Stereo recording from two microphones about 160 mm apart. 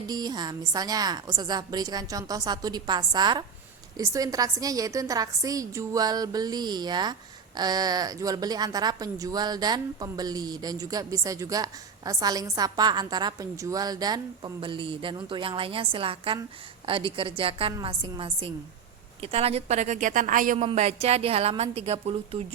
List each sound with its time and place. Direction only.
0.1 s a woman's voice: 25° right (ahead or behind); by 20.7 s 55° right (ahead or behind)
20.7 s a woman's voice: 40° right (ahead or behind)